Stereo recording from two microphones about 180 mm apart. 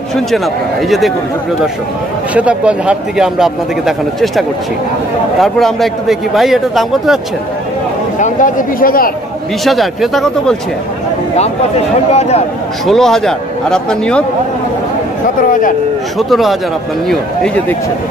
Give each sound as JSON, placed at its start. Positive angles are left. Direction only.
{"t": 0.1, "sound": "a man's voice", "side_deg": 0}
{"t": 2.3, "sound": "a man's voice", "side_deg": -5}
{"t": 8.2, "sound": "speech", "side_deg": 45}
{"t": 9.7, "sound": "a man's voice", "side_deg": 0}
{"t": 11.3, "sound": "speech", "side_deg": 35}
{"t": 12.8, "sound": "a man's voice", "side_deg": 0}
{"t": 16.2, "sound": "a man's voice", "side_deg": 0}